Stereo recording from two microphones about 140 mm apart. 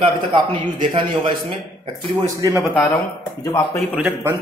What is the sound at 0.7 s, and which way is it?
Speech, 40° right (ahead or behind).